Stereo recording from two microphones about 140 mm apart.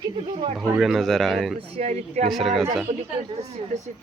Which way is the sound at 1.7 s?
50° right (ahead or behind).